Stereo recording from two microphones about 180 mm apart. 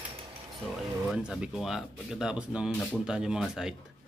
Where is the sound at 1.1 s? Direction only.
5° right (ahead or behind).